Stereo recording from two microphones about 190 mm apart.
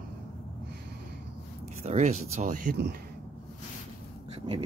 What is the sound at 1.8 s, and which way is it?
Speech, 35° right (ahead or behind).